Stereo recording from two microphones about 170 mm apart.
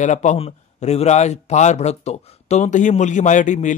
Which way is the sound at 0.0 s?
45° left (ahead or behind).